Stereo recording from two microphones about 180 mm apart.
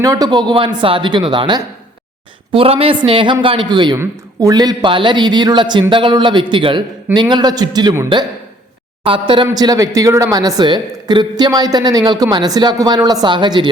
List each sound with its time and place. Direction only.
0.0 s a woman's voice: 20° right (ahead or behind)